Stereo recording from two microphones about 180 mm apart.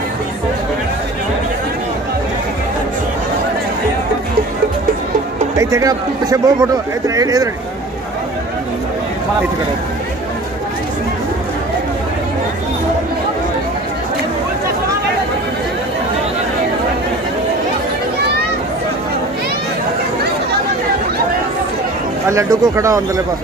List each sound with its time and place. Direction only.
5.6 s a man's voice: 20° right (ahead or behind)
22.3 s speech: 15° right (ahead or behind)